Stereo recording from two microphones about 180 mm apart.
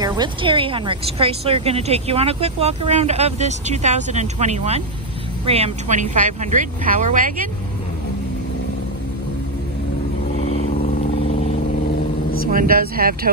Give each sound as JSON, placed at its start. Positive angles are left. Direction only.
{"t": 0.0, "sound": "a woman's voice", "side_deg": -25}
{"t": 10.3, "sound": "vehicle", "side_deg": 90}
{"t": 12.4, "sound": "a woman's voice", "side_deg": -50}